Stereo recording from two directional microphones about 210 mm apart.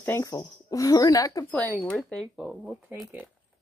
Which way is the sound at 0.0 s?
15° left (ahead or behind).